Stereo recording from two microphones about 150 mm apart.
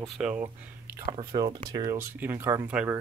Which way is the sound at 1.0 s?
35° right (ahead or behind).